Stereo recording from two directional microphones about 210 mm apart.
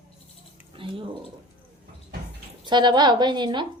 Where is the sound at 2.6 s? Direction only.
20° right (ahead or behind).